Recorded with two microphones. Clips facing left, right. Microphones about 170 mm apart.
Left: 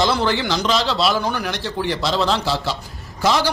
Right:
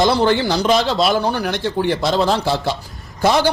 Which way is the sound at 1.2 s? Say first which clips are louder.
Right 4 dB; 35° right (ahead or behind).